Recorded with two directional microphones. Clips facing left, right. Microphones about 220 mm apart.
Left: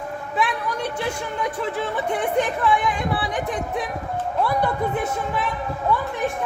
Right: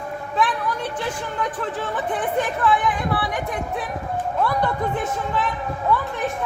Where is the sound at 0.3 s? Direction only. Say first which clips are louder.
Right 1 dB; 10° left (ahead or behind).